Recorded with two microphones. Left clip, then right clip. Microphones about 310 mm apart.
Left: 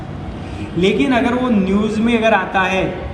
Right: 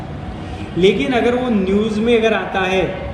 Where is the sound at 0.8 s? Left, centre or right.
Centre.